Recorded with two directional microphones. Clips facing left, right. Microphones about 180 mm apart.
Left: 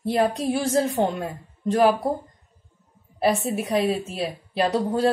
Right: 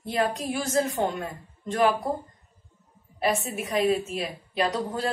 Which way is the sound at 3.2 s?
35° left (ahead or behind).